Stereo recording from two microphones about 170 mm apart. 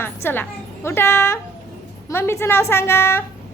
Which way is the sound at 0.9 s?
15° left (ahead or behind).